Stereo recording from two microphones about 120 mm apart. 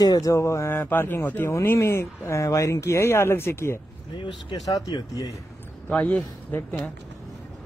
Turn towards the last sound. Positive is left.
turn(degrees=15)  # may be behind; listen again after turning